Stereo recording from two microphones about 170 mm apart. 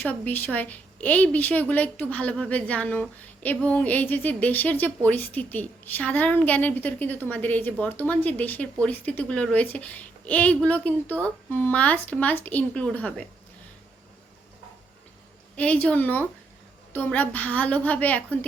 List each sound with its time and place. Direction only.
0.0 s a woman's voice: 10° left (ahead or behind)
15.5 s a woman's voice: 10° left (ahead or behind)